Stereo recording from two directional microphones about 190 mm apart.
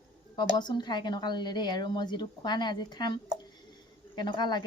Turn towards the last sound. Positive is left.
turn(degrees=25)  # may be behind; listen again after turning